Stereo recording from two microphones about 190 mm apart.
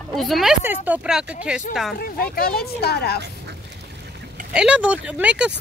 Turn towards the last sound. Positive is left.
turn(degrees=-5)  # may be behind; listen again after turning